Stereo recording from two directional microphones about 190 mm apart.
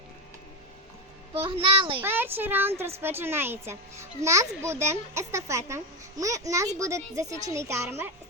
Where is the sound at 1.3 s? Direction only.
30° right (ahead or behind).